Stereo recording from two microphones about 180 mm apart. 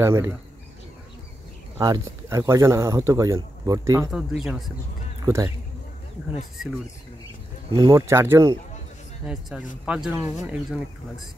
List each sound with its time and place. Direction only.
0.0 s speech: 15° right (ahead or behind)
1.8 s speech: 20° right (ahead or behind)
4.1 s speech: centre (ahead or behind)
5.2 s speech: 20° right (ahead or behind)
7.7 s speech: 20° right (ahead or behind)
9.2 s speech: centre (ahead or behind)